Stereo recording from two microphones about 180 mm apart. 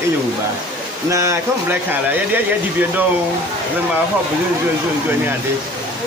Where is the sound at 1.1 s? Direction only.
15° right (ahead or behind).